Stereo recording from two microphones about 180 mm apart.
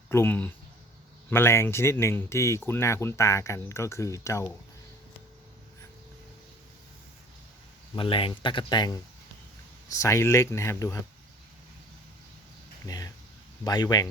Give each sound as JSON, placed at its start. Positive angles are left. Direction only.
{"t": 0.1, "sound": "speech", "side_deg": 10}
{"t": 7.9, "sound": "speech", "side_deg": 30}
{"t": 10.0, "sound": "speech", "side_deg": 15}
{"t": 12.8, "sound": "speech", "side_deg": 20}